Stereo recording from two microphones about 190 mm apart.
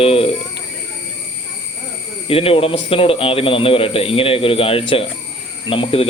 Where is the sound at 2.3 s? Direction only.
30° left (ahead or behind).